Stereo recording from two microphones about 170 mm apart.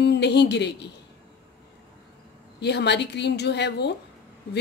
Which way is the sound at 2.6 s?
85° left.